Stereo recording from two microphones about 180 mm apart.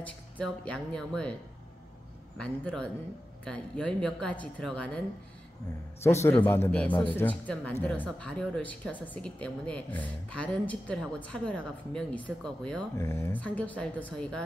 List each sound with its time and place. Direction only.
0.0 s a woman's voice: 5° left (ahead or behind)
2.3 s a woman's voice: 5° left (ahead or behind)
6.0 s a woman's voice: 15° left (ahead or behind)
12.9 s speech: 15° left (ahead or behind)